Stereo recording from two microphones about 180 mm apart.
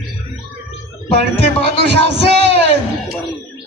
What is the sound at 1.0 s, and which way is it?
Speech, 30° left (ahead or behind).